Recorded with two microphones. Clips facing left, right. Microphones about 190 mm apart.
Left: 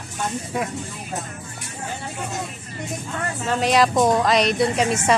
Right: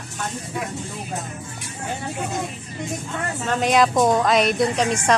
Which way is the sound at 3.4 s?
Centre (ahead or behind).